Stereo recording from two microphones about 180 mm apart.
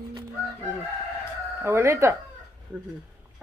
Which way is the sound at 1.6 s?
15° right (ahead or behind).